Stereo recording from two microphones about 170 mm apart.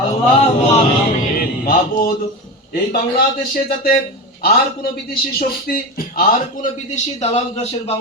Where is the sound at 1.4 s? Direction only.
60° left (ahead or behind).